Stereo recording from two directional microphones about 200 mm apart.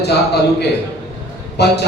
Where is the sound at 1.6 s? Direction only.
55° left (ahead or behind).